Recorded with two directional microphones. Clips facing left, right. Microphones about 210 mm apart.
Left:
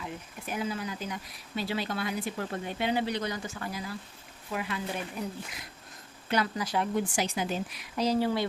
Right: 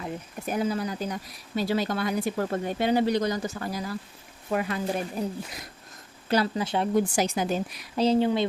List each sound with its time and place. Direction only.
0.0 s speech: 40° right (ahead or behind)
6.9 s speech: 45° right (ahead or behind)
7.9 s speech: 25° right (ahead or behind)